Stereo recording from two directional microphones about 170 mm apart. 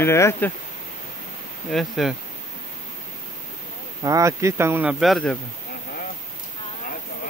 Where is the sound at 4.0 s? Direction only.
20° right (ahead or behind).